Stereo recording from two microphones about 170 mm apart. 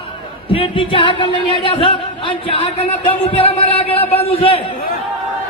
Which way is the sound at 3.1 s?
35° left (ahead or behind).